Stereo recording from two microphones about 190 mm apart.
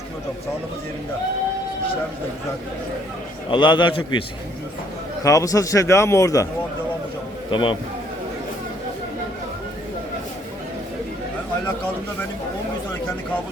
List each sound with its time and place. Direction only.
3.5 s a man's voice: 25° left (ahead or behind)
5.2 s a man's voice: 15° left (ahead or behind)
7.5 s a man's voice: 25° left (ahead or behind)